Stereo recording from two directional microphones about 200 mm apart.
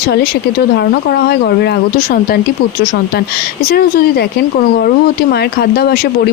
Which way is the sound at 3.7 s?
50° left (ahead or behind).